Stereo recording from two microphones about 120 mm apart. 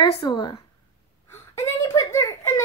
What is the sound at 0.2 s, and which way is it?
Speech, 35° left (ahead or behind).